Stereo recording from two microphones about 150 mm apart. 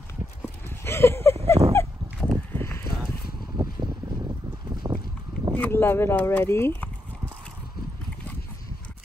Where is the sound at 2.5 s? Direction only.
15° left (ahead or behind).